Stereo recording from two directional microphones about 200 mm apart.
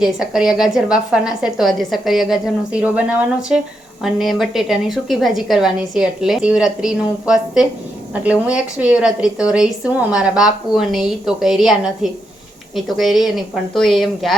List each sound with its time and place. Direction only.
0.0 s a woman's voice: 5° right (ahead or behind)
12.7 s a woman's voice: centre (ahead or behind)